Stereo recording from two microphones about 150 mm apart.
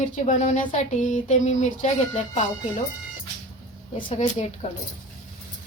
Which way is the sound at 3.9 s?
35° left (ahead or behind).